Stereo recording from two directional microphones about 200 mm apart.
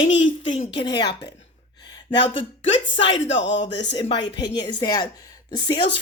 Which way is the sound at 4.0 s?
25° left (ahead or behind).